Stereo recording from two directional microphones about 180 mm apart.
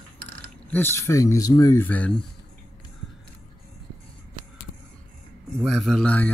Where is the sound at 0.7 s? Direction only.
10° left (ahead or behind).